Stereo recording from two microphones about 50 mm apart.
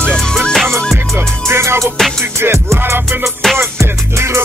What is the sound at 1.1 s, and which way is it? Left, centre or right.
Music, right.